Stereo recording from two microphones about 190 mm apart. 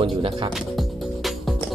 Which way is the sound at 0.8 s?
Centre (ahead or behind).